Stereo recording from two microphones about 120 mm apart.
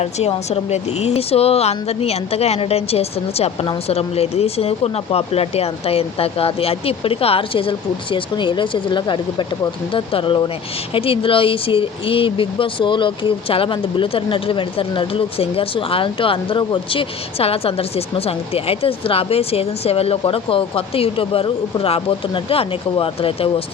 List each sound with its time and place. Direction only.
0.0 s a woman's voice: 60° left (ahead or behind)